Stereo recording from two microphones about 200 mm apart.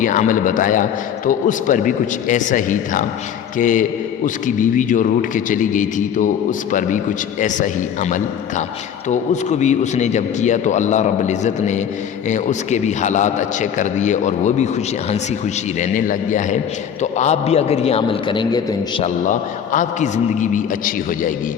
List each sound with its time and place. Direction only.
0.0 s a man's voice: 40° left (ahead or behind)
15.8 s a man's voice: 40° left (ahead or behind); by 19.0 s 20° left (ahead or behind)
19.0 s a man's voice: 40° left (ahead or behind)